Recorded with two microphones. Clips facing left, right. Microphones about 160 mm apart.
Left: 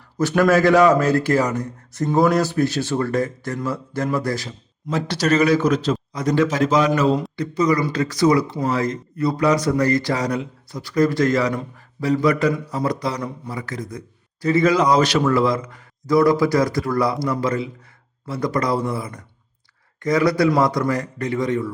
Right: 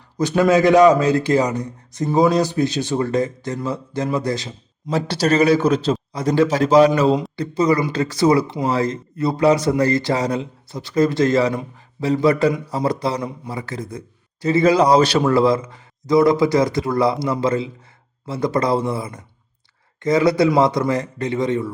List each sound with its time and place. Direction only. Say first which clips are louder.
0.2 s a man's voice: right 1 dB; 15° right (ahead or behind)
4.9 s a man's voice: right 1 dB; 30° right (ahead or behind)